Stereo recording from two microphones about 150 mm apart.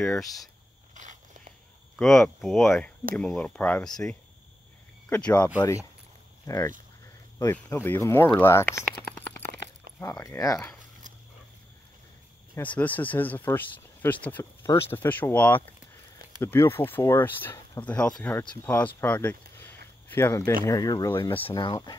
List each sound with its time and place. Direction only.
0.0 s speech: centre (ahead or behind)
0.9 s biting: 55° right (ahead or behind)
2.0 s speech: centre (ahead or behind)
5.6 s speech: 20° left (ahead or behind)
9.9 s a sound: 80° right
10.2 s speech: 20° left (ahead or behind)
12.5 s speech: 10° left (ahead or behind)
18.4 s speech: 30° left (ahead or behind)
18.9 s speech: 10° left (ahead or behind); by 21.5 s 35° left (ahead or behind)
21.5 s speech: 25° left (ahead or behind)